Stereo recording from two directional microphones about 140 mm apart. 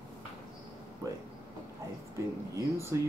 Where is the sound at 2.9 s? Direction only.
20° right (ahead or behind).